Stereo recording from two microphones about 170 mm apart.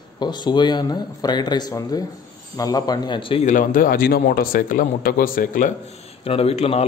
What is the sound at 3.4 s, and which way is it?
Speech, 50° left (ahead or behind).